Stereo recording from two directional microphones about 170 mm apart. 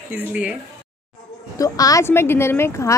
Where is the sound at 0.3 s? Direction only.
10° right (ahead or behind).